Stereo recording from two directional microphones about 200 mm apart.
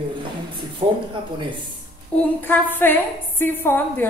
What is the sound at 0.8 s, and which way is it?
Speech, 30° right (ahead or behind).